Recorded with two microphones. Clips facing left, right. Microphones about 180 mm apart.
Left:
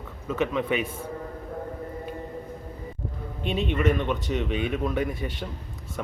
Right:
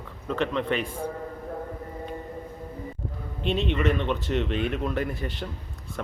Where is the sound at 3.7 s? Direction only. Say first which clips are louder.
Left 1 dB; 5° left (ahead or behind).